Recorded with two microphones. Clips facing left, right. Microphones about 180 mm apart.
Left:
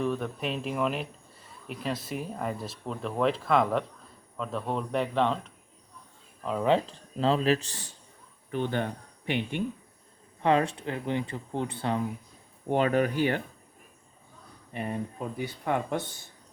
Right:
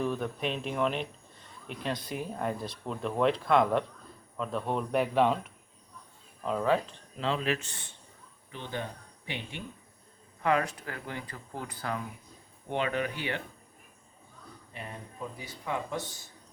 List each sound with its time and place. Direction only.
0.0 s speech: centre (ahead or behind)
6.7 s speech: 25° left (ahead or behind)
7.2 s a man's voice: 35° left (ahead or behind)
8.5 s speech: 55° left (ahead or behind)
10.4 s speech: 30° left (ahead or behind)
12.6 s speech: 40° left (ahead or behind)
14.7 s speech: 55° left (ahead or behind)